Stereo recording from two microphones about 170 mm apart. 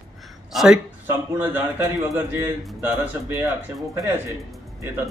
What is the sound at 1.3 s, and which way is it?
A man's voice, 10° right (ahead or behind).